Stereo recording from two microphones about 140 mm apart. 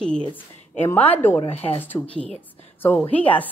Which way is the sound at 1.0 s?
15° left (ahead or behind).